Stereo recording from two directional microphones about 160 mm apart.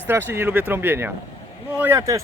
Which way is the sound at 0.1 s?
15° right (ahead or behind).